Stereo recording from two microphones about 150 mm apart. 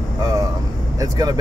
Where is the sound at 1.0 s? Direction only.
25° right (ahead or behind).